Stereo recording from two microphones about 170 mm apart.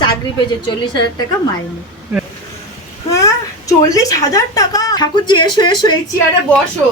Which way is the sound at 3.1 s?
20° left (ahead or behind).